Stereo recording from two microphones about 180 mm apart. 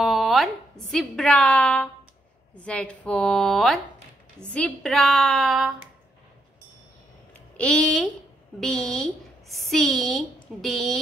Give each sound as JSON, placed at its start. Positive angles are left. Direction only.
{"t": 0.0, "sound": "a woman's voice", "side_deg": 0}
{"t": 7.5, "sound": "a woman's voice", "side_deg": 5}